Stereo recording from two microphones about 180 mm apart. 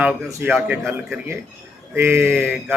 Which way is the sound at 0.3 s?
15° right (ahead or behind).